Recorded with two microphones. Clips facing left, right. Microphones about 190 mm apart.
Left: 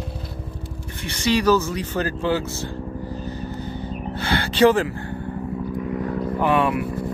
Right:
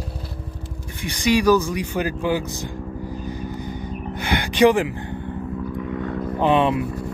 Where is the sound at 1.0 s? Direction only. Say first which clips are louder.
Right 2 dB; 15° right (ahead or behind).